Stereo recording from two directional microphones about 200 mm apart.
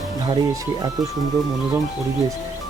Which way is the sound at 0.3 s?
20° right (ahead or behind).